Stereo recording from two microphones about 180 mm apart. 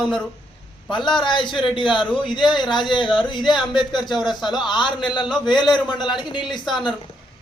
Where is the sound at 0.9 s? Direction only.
25° left (ahead or behind).